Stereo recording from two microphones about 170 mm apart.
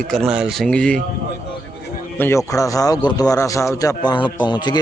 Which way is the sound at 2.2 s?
15° left (ahead or behind).